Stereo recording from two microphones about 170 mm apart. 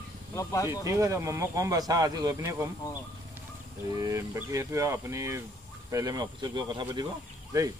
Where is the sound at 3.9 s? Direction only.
20° right (ahead or behind).